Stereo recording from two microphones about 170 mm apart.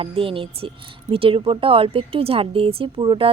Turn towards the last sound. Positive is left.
turn(degrees=-30)  # may be behind; listen again after turning